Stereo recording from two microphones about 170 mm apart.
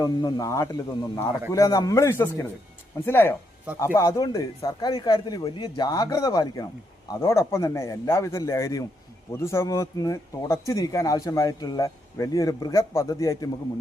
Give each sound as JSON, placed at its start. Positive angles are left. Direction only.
{"t": 0.0, "sound": "a man's voice", "side_deg": 25}